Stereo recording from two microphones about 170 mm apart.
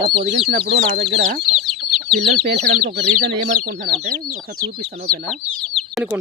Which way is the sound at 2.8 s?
75° right (ahead or behind).